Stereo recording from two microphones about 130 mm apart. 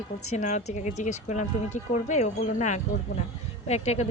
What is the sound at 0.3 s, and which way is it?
Speech, 70° left (ahead or behind).